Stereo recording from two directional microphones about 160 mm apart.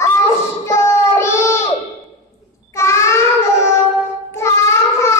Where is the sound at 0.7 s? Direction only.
15° left (ahead or behind).